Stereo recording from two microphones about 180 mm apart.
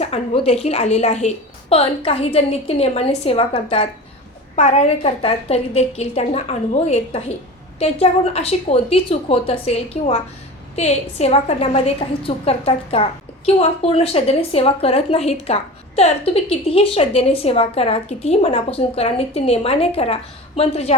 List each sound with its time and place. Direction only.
0.0 s a woman's voice: 35° left (ahead or behind)